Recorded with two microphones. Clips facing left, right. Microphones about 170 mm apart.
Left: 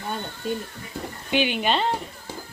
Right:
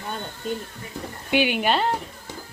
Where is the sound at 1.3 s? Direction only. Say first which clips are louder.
Right 2 dB; 10° right (ahead or behind).